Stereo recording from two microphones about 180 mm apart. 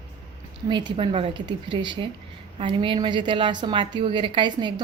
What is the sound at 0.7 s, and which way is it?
A woman's voice, 25° right (ahead or behind).